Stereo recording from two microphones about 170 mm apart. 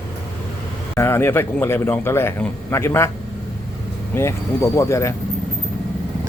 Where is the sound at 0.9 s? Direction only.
15° left (ahead or behind).